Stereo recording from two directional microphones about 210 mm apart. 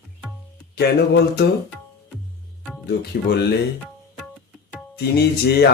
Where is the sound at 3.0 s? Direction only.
50° left (ahead or behind).